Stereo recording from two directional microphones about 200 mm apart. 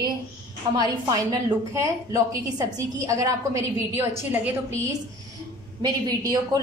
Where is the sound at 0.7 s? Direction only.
20° right (ahead or behind).